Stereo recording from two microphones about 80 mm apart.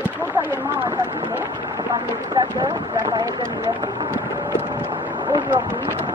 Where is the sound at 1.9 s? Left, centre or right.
Right.